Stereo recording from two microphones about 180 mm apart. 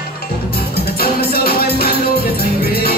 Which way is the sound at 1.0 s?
55° left (ahead or behind).